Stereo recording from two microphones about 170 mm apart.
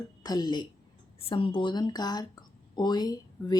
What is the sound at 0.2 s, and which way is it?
Speech, 25° left (ahead or behind).